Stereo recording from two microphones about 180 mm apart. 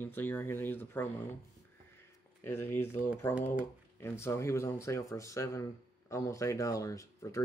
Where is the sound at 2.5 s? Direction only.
10° left (ahead or behind).